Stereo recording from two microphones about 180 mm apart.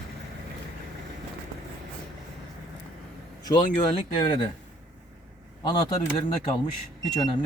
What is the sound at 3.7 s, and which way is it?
Speech, 30° left (ahead or behind).